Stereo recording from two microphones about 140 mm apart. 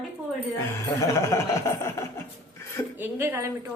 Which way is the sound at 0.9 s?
20° left (ahead or behind).